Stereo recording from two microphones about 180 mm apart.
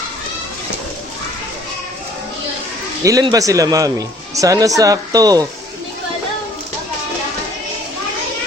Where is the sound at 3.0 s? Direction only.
20° right (ahead or behind).